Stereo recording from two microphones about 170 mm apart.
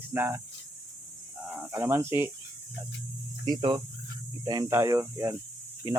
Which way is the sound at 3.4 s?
25° right (ahead or behind).